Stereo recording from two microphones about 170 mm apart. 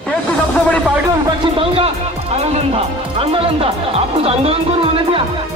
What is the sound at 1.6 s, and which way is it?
A man's voice, 35° right (ahead or behind).